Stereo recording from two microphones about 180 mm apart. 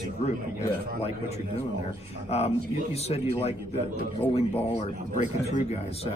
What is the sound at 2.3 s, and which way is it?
Speech, 35° left (ahead or behind).